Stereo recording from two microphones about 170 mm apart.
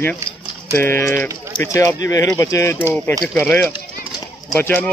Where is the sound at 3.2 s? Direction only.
5° left (ahead or behind).